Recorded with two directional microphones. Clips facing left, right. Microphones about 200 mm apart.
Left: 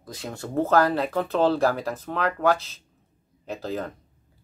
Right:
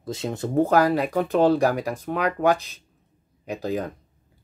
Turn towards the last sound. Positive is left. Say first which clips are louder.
# right 3 dB
turn(degrees=-15)  # may be behind; listen again after turning